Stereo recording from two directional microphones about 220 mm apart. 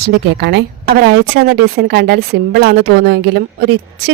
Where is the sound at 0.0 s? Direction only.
50° right (ahead or behind).